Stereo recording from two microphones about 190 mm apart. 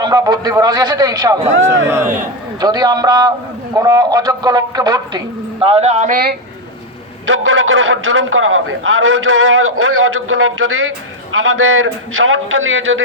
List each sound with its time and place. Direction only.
0.0 s a man's voice: 20° right (ahead or behind); by 6.1 s 35° right (ahead or behind)
7.3 s a man's voice: 90° right